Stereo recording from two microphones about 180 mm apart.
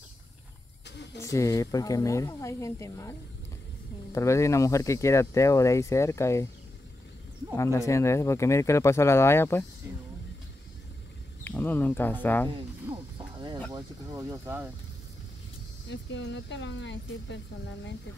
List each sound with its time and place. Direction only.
1.1 s speech: 15° left (ahead or behind)
7.5 s speech: 15° left (ahead or behind)
11.4 s speech: 10° left (ahead or behind)
12.9 s a sound: 10° right (ahead or behind)
13.7 s speech: 20° right (ahead or behind)
15.9 s speech: 75° left (ahead or behind)